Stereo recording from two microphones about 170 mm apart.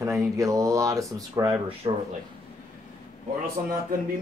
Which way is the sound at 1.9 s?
35° right (ahead or behind).